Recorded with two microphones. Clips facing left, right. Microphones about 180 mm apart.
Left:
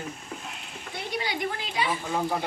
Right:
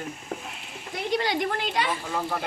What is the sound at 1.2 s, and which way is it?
Speech, 50° right (ahead or behind).